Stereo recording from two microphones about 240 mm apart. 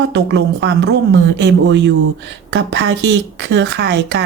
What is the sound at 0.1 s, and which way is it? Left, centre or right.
Speech, right.